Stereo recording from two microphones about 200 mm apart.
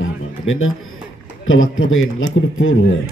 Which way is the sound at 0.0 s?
85° left.